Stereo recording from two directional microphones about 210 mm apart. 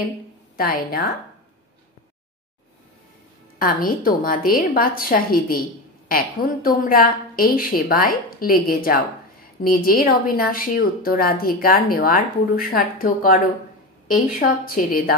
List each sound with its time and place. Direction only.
0.6 s a woman's voice: 45° left (ahead or behind)
3.5 s a woman's voice: 45° left (ahead or behind)